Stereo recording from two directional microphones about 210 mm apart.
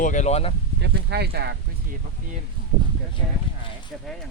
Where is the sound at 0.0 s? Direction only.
35° left (ahead or behind).